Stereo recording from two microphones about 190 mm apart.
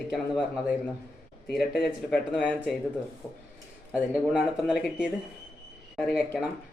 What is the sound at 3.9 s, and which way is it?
Speech, 5° right (ahead or behind).